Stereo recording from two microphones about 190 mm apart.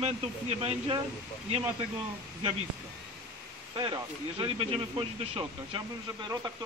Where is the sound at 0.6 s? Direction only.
30° right (ahead or behind).